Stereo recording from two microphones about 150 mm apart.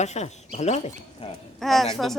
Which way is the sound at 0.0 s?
50° left (ahead or behind).